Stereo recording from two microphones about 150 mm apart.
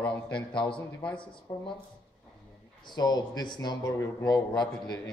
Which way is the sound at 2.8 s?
30° left (ahead or behind).